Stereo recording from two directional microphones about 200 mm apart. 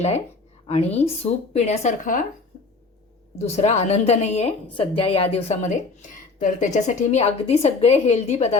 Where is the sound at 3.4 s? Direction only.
35° left (ahead or behind).